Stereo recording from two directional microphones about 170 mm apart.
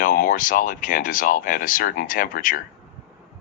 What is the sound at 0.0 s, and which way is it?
Speech, 50° left (ahead or behind).